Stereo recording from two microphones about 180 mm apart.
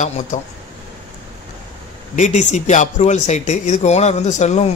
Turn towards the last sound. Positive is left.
turn(degrees=40)  # may be behind; listen again after turning